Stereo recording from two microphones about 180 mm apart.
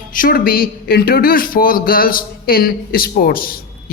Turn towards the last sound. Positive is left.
turn(degrees=55)  # may be behind; listen again after turning